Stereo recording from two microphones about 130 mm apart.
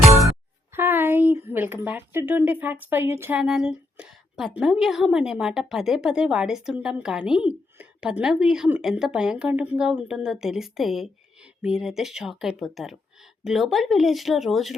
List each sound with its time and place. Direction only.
0.3 s speech: 20° right (ahead or behind)
3.4 s a woman's voice: 5° right (ahead or behind)